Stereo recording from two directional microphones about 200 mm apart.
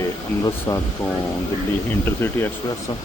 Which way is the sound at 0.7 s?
15° left (ahead or behind).